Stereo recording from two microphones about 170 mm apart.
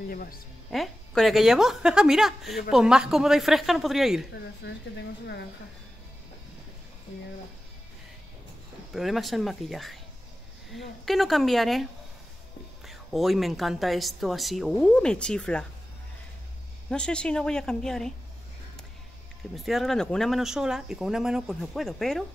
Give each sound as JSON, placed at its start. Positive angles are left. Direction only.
{"t": 0.1, "sound": "speech", "side_deg": 60}
{"t": 0.7, "sound": "speech", "side_deg": 0}
{"t": 4.6, "sound": "speech", "side_deg": 85}
{"t": 8.9, "sound": "speech", "side_deg": 0}
{"t": 16.9, "sound": "speech", "side_deg": 5}
{"t": 19.5, "sound": "speech", "side_deg": 0}